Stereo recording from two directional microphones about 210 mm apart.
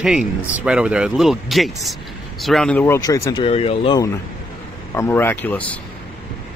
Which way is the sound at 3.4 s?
25° left (ahead or behind).